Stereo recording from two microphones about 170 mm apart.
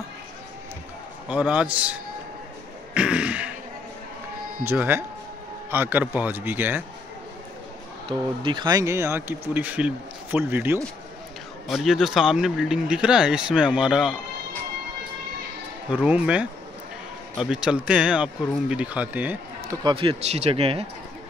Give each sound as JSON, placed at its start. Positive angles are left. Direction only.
{"t": 1.3, "sound": "speech", "side_deg": -10}
{"t": 2.9, "sound": "throat clearing", "side_deg": -5}
{"t": 4.6, "sound": "speech", "side_deg": -10}
{"t": 8.1, "sound": "speech", "side_deg": -30}
{"t": 11.6, "sound": "speech", "side_deg": 0}
{"t": 15.9, "sound": "speech", "side_deg": -5}
{"t": 19.8, "sound": "speech", "side_deg": -30}